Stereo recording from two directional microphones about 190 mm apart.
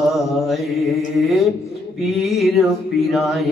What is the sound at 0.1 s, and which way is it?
Mantra, centre (ahead or behind).